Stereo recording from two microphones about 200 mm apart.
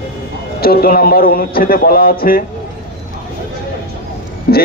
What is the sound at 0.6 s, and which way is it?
A man's voice, 50° left (ahead or behind).